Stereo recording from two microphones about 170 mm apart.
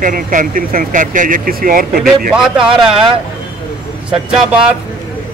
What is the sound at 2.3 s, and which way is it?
Speech, 5° right (ahead or behind).